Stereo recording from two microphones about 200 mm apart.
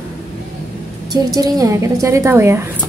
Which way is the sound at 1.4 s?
20° right (ahead or behind).